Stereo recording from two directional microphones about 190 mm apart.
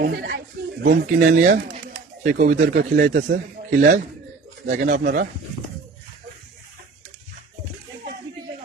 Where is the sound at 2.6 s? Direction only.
65° right (ahead or behind).